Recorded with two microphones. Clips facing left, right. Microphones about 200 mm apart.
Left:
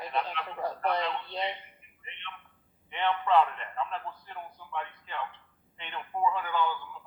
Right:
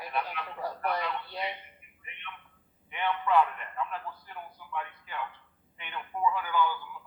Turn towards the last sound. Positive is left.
turn(degrees=25)  # may be behind; listen again after turning